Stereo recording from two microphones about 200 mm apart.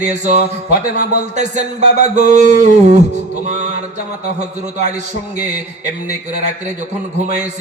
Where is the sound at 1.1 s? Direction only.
35° right (ahead or behind).